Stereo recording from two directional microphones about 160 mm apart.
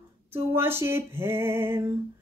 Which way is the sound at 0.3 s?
15° right (ahead or behind).